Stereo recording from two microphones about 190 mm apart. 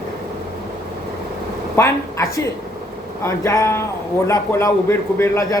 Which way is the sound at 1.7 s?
15° left (ahead or behind).